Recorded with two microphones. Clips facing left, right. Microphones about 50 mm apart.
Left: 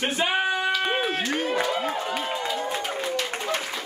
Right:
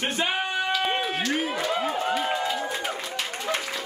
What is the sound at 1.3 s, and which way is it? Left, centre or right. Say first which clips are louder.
Speech: left 1 dB; centre.